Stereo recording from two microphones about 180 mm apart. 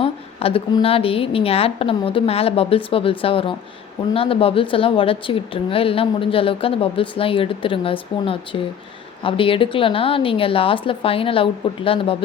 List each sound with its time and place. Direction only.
0.0 s a woman's voice: 35° left (ahead or behind)